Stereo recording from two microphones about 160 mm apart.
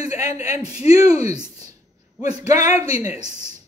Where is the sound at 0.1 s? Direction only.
45° left (ahead or behind).